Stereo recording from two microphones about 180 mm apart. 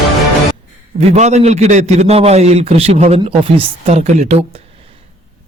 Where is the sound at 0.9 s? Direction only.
40° right (ahead or behind).